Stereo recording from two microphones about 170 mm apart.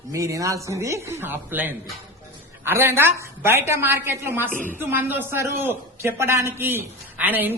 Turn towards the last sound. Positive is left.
turn(degrees=-10)  # may be behind; listen again after turning